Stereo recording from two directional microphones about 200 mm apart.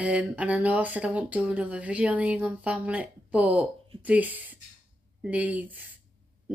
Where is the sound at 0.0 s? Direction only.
5° right (ahead or behind).